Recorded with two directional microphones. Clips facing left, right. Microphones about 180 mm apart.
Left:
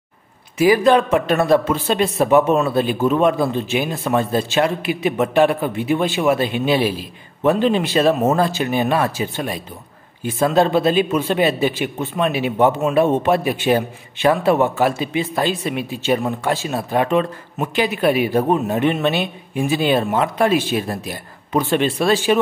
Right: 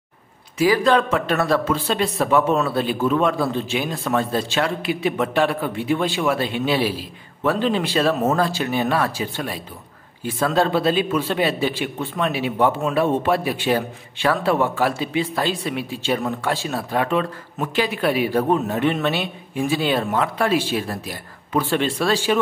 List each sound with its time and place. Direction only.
0.6 s speech: 10° left (ahead or behind)